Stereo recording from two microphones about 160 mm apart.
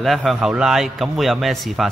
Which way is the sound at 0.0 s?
Centre (ahead or behind).